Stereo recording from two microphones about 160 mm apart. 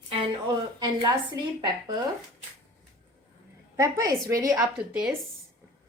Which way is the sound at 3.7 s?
20° right (ahead or behind).